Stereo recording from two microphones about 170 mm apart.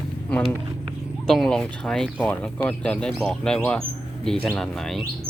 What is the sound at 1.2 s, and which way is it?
Speech, centre (ahead or behind).